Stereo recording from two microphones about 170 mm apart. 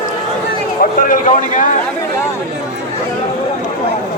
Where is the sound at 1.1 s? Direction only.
50° left (ahead or behind).